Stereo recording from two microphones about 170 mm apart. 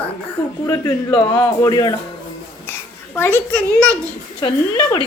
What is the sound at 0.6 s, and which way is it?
A woman's voice, 25° left (ahead or behind).